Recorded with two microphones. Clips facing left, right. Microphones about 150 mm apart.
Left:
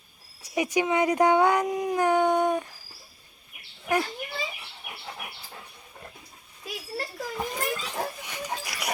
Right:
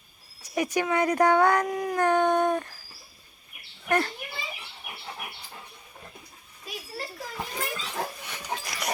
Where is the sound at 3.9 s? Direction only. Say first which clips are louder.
Right 1 dB; 10° left (ahead or behind).